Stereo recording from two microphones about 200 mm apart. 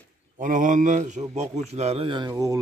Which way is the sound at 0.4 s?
40° right (ahead or behind).